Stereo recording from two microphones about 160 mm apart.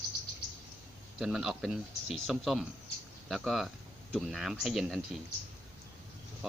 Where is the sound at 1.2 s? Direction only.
5° right (ahead or behind).